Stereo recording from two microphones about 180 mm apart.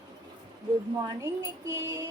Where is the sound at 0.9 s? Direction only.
15° right (ahead or behind).